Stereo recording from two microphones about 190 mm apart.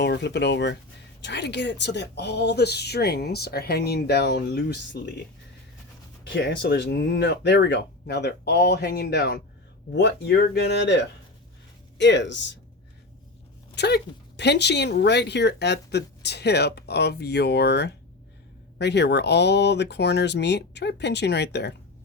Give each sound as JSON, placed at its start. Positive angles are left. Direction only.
{"t": 0.0, "sound": "speech", "side_deg": 65}
{"t": 6.2, "sound": "speech", "side_deg": 65}
{"t": 13.7, "sound": "speech", "side_deg": 60}